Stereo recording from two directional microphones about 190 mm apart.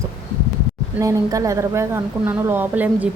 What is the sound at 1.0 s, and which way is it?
Speech, 15° right (ahead or behind).